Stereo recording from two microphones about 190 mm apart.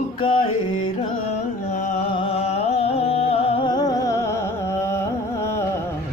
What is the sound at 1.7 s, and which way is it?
Music, 40° left (ahead or behind).